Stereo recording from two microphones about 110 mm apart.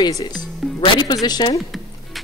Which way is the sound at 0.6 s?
Centre (ahead or behind).